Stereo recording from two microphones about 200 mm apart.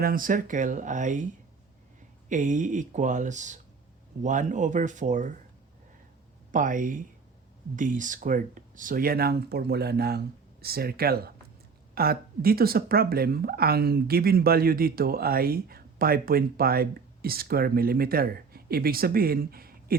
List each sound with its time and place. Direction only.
0.0 s speech: 45° right (ahead or behind)
2.3 s speech: 40° right (ahead or behind)
6.5 s speech: 40° right (ahead or behind)